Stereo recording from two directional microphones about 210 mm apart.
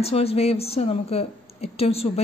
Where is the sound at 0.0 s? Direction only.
30° left (ahead or behind).